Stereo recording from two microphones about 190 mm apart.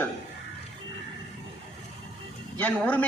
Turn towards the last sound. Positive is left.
turn(degrees=10)  # may be behind; listen again after turning